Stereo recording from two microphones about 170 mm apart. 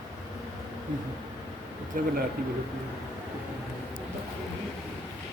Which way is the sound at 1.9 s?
50° right (ahead or behind).